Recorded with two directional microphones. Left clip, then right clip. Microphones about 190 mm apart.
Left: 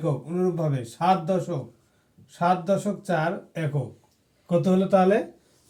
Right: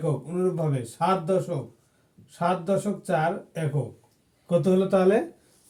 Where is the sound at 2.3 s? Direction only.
10° right (ahead or behind).